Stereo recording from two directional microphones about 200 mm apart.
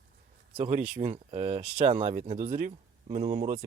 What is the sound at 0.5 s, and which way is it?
Speech, 35° right (ahead or behind).